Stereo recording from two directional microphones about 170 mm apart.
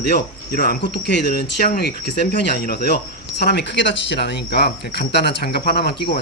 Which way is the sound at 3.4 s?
80° left.